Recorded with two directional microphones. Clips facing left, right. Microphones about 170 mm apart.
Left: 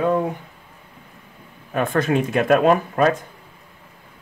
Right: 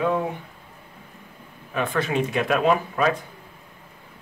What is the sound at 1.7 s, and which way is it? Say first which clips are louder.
Speech: left 4 dB; 45° left (ahead or behind).